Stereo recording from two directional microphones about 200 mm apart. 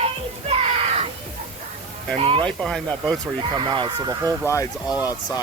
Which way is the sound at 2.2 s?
25° right (ahead or behind).